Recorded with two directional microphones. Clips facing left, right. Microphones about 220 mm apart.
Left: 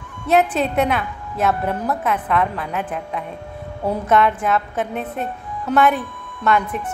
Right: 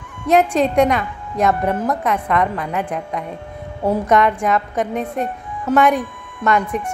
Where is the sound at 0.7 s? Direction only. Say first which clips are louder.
Right 4 dB; 5° left (ahead or behind).